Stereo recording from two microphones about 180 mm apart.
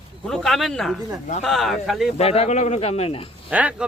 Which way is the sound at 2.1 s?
35° left (ahead or behind).